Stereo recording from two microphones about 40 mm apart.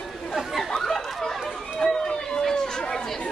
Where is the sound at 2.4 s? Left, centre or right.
Centre.